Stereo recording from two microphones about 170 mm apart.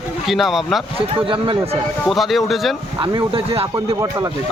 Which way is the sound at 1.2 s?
30° right (ahead or behind).